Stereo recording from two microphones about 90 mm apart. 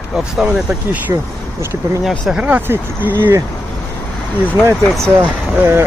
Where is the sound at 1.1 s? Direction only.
40° right (ahead or behind).